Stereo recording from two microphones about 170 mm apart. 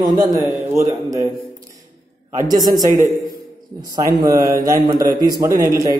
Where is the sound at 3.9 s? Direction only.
20° right (ahead or behind).